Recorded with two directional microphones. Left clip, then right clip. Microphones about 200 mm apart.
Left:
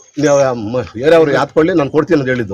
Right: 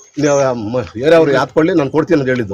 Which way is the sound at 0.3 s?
15° left (ahead or behind).